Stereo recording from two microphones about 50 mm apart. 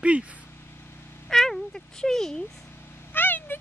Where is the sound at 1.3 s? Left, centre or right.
Centre.